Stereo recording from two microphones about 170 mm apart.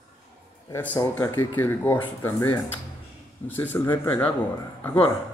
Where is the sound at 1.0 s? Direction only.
15° left (ahead or behind).